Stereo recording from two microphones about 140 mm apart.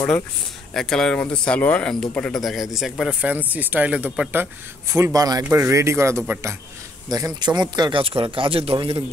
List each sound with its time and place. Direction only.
0.7 s speech: 5° left (ahead or behind); by 4.5 s 15° right (ahead or behind)
4.9 s speech: 25° right (ahead or behind)
7.1 s speech: 25° right (ahead or behind)